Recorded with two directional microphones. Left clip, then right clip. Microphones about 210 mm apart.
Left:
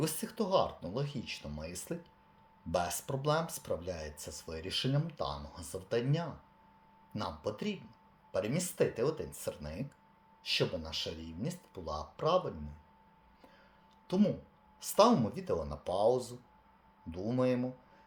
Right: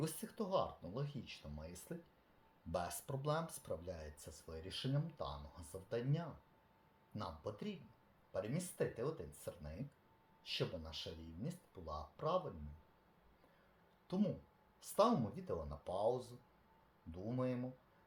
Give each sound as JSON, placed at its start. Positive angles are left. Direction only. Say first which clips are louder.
{"t": 0.0, "sound": "speech", "louder": "left 9 dB", "side_deg": 10}
{"t": 14.1, "sound": "speech", "louder": "left 10 dB", "side_deg": 15}